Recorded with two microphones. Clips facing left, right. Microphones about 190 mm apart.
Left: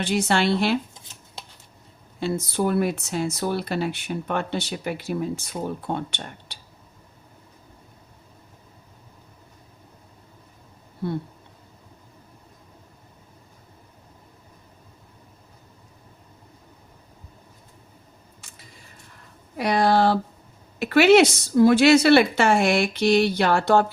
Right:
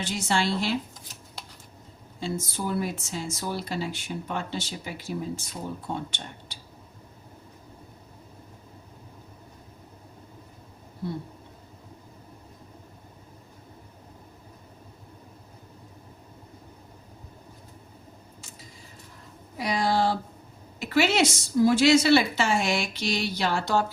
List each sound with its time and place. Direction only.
0.0 s speech: 60° left (ahead or behind)
2.2 s speech: 60° left (ahead or behind)
11.0 s speech: 65° left (ahead or behind)
19.5 s speech: 60° left (ahead or behind)